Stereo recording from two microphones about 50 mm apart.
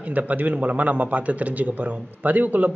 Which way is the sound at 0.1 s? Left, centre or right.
Right.